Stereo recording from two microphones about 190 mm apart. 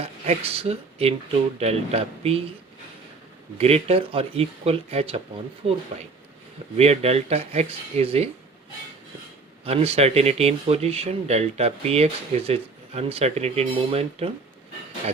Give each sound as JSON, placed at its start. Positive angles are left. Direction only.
{"t": 0.0, "sound": "speech", "side_deg": -30}
{"t": 3.6, "sound": "speech", "side_deg": -30}
{"t": 9.6, "sound": "speech", "side_deg": -35}